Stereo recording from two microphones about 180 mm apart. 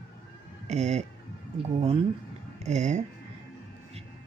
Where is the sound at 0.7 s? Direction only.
40° right (ahead or behind).